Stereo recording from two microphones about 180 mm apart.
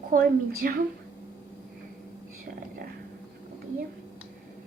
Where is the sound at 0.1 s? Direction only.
55° right (ahead or behind).